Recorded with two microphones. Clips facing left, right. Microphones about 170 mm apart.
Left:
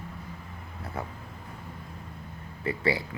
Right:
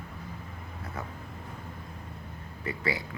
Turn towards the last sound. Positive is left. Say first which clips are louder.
# left 4 dB
turn(degrees=30)  # may be behind; listen again after turning